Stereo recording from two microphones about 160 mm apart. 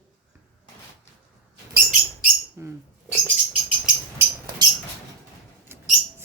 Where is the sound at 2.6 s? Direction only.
15° right (ahead or behind).